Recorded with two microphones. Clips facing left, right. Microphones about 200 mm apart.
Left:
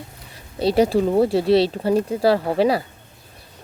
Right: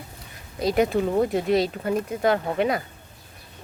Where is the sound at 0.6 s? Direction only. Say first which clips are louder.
Left 4 dB; 30° left (ahead or behind).